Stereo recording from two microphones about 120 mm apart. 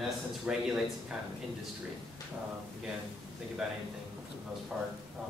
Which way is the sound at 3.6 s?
5° right (ahead or behind).